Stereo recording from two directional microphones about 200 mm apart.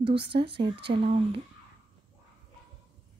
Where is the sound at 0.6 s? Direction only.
55° right (ahead or behind).